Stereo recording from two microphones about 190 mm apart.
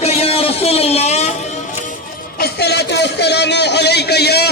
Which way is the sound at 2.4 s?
55° left (ahead or behind).